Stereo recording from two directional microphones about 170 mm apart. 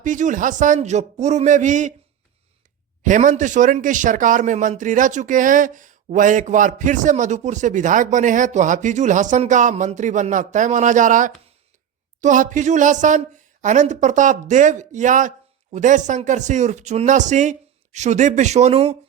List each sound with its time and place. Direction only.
0.0 s speech: 50° right (ahead or behind)
3.0 s speech: 50° right (ahead or behind)